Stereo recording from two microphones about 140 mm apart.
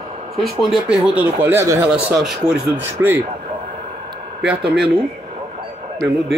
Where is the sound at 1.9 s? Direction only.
5° right (ahead or behind).